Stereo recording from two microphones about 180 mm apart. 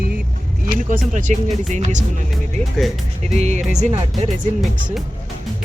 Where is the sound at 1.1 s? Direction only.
45° right (ahead or behind).